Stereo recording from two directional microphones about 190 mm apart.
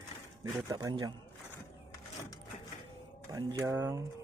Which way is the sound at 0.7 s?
20° right (ahead or behind).